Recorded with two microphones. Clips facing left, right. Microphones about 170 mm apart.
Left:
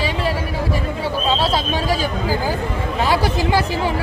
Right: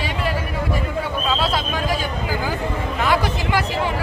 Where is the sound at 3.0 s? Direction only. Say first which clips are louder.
Left 3 dB; 30° left (ahead or behind).